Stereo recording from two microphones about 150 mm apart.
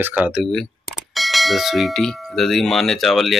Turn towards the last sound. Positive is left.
turn(degrees=0)  # may be behind; listen again after turning